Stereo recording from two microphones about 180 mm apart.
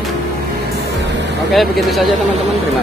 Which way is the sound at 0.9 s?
75° right (ahead or behind).